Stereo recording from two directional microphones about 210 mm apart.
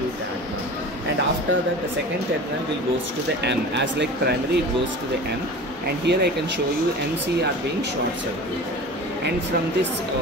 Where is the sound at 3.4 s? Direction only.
55° right (ahead or behind).